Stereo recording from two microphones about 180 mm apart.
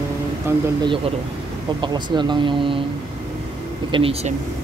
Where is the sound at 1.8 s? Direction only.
25° right (ahead or behind).